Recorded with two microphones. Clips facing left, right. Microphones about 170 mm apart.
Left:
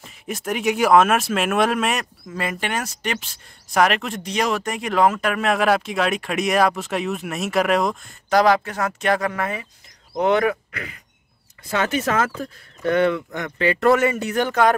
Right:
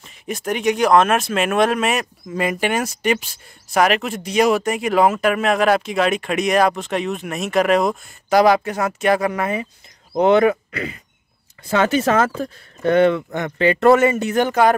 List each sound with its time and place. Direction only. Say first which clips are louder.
0.0 s speech: right 3 dB; centre (ahead or behind)
2.2 s speech: right 8 dB; 15° right (ahead or behind)